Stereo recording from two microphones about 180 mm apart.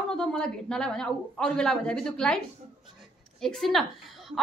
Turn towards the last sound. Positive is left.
turn(degrees=0)  # may be behind; listen again after turning